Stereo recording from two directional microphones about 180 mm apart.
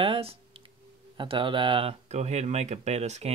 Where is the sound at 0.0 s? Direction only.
30° right (ahead or behind).